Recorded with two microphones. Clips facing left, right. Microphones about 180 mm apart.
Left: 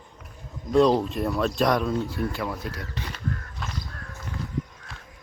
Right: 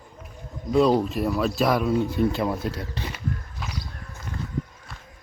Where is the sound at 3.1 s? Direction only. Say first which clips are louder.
Right 1 dB; 5° right (ahead or behind).